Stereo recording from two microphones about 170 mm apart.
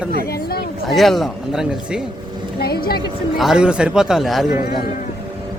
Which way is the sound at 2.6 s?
65° left (ahead or behind).